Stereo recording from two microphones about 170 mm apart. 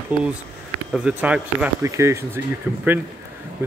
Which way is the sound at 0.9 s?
5° right (ahead or behind).